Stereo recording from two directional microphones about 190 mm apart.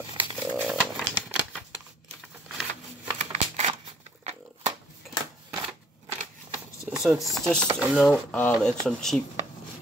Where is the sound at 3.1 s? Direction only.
35° right (ahead or behind).